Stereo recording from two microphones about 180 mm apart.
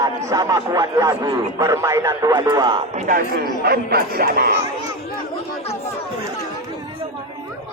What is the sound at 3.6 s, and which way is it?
Speech, 60° right (ahead or behind).